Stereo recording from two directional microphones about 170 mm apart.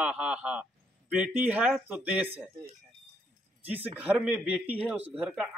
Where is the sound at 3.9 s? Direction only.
10° right (ahead or behind).